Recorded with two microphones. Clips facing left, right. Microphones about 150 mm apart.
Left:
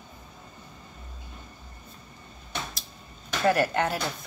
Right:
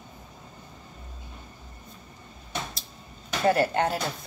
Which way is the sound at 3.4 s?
30° right (ahead or behind).